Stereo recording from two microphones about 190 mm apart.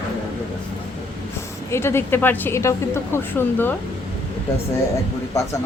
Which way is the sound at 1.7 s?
15° left (ahead or behind).